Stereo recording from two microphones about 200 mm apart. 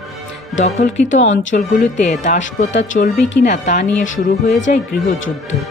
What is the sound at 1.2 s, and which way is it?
Speech, 70° left (ahead or behind).